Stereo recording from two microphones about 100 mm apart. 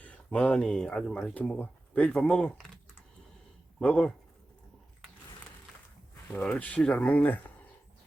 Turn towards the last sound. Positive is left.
turn(degrees=20)  # may be behind; listen again after turning